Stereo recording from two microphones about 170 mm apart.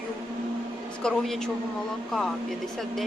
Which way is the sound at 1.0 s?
Centre (ahead or behind).